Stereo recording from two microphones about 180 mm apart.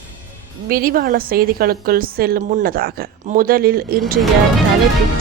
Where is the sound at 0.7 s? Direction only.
55° right (ahead or behind).